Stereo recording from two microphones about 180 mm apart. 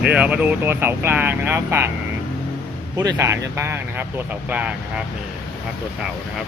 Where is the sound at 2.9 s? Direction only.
20° right (ahead or behind).